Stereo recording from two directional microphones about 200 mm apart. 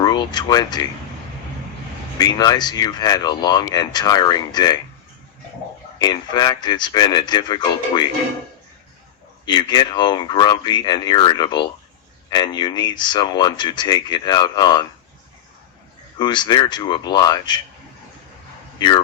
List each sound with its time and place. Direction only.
0.0 s speech: 20° left (ahead or behind)
2.1 s speech: 20° left (ahead or behind)
6.0 s speech: 20° left (ahead or behind)
9.5 s speech: 20° left (ahead or behind)
16.1 s speech: 20° left (ahead or behind)